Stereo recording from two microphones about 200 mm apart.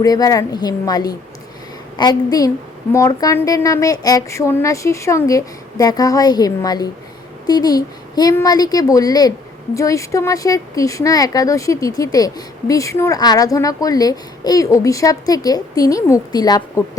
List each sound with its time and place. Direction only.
0.0 s a woman's voice: 20° left (ahead or behind)